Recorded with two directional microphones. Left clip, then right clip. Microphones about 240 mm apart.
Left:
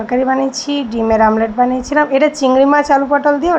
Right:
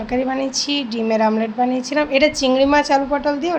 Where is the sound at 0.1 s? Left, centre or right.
Centre.